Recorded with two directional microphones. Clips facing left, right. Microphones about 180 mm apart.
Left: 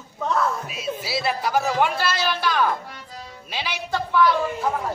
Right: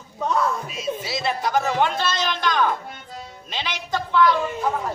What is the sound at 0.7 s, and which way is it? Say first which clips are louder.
Speech: even; 5° left (ahead or behind).